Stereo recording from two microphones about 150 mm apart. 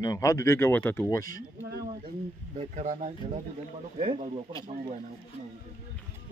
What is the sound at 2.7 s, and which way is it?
Speech, 55° right (ahead or behind).